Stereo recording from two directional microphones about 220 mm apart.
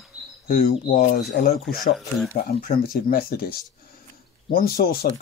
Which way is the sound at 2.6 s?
45° left (ahead or behind).